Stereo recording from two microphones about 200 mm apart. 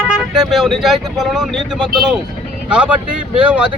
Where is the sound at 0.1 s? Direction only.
Centre (ahead or behind).